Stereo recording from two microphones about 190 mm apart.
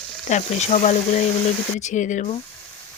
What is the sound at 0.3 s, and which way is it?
Speech, 35° left (ahead or behind).